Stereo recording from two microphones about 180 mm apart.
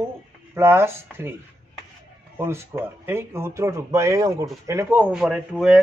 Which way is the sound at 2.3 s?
15° right (ahead or behind).